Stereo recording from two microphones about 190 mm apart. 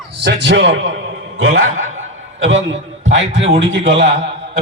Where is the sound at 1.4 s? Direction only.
90° right.